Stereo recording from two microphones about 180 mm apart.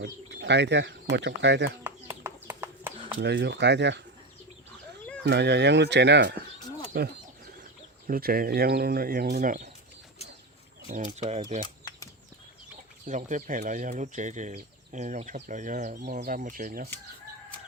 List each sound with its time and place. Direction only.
0.0 s speech: 75° right (ahead or behind)
1.8 s horse: 10° right (ahead or behind)
3.2 s speech: 75° right (ahead or behind)
5.2 s speech: 70° right (ahead or behind)
8.0 s speech: 55° right (ahead or behind)
10.8 s speech: 45° right (ahead or behind)
12.7 s speech: 45° right (ahead or behind)